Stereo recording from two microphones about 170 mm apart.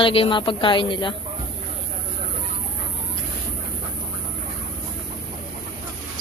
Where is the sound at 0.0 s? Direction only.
30° left (ahead or behind).